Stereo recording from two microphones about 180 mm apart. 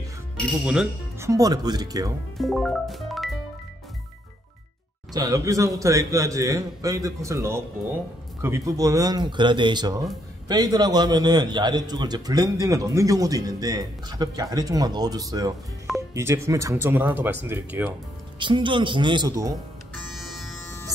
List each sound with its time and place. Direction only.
1.2 s a man's voice: 20° right (ahead or behind)
2.3 s music: centre (ahead or behind)
5.1 s a man's voice: 20° right (ahead or behind)
18.4 s a man's voice: 25° right (ahead or behind)
20.2 s music: centre (ahead or behind)